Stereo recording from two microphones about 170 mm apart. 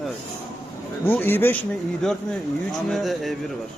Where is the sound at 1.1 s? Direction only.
10° left (ahead or behind).